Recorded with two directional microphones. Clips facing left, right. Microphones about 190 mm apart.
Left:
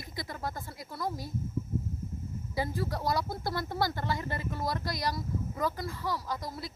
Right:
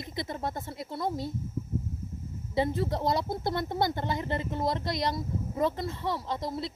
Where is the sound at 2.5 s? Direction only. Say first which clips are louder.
Right 5 dB; 25° right (ahead or behind).